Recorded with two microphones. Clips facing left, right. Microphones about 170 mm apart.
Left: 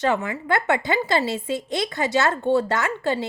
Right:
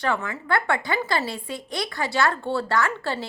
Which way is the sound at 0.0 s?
20° left (ahead or behind).